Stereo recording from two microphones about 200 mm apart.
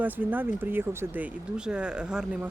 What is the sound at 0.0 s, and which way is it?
Speech, 10° right (ahead or behind).